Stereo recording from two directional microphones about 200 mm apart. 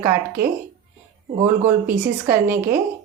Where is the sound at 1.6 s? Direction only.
40° right (ahead or behind).